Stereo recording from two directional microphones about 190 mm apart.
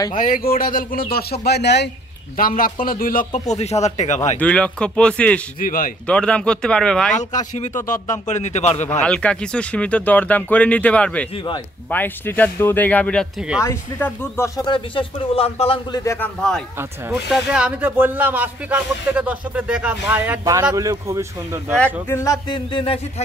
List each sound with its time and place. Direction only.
0.1 s speech: 50° left (ahead or behind)
2.3 s a man's voice: 45° left (ahead or behind)
4.4 s speech: 5° left (ahead or behind)
5.6 s speech: 50° left (ahead or behind)
6.0 s speech: 5° left (ahead or behind)
7.5 s a man's voice: 40° left (ahead or behind)
9.0 s speech: 5° left (ahead or behind)
11.3 s speech: 25° left (ahead or behind)
11.9 s speech: 10° left (ahead or behind)
13.6 s speech: 15° left (ahead or behind); by 16.0 s 30° left (ahead or behind)
16.0 s speech: 15° left (ahead or behind)
16.3 s speech: centre (ahead or behind); by 21.7 s 15° right (ahead or behind)
22.0 s speech: 15° left (ahead or behind)